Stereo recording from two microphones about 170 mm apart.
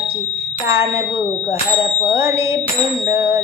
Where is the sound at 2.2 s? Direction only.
15° right (ahead or behind).